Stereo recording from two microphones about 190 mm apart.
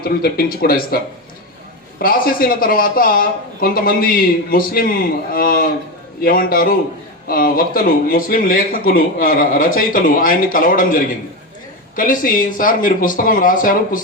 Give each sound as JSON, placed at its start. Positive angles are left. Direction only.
{"t": 0.0, "sound": "speech", "side_deg": 55}
{"t": 2.0, "sound": "speech", "side_deg": 50}
{"t": 11.9, "sound": "speech", "side_deg": 45}